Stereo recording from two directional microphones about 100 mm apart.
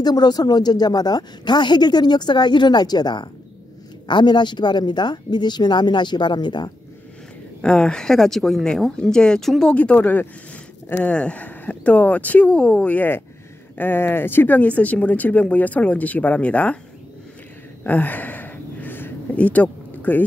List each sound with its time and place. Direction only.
0.0 s speech: 45° left (ahead or behind)
7.6 s speech: 10° left (ahead or behind)
17.8 s a sound: 15° left (ahead or behind)